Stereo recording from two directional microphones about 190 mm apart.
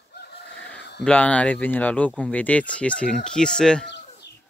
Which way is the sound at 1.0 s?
5° left (ahead or behind).